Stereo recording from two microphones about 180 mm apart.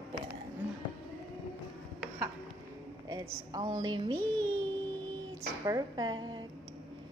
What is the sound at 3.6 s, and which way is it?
Speech, 25° right (ahead or behind).